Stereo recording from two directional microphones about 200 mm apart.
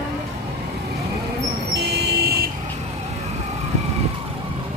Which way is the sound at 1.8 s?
50° right (ahead or behind).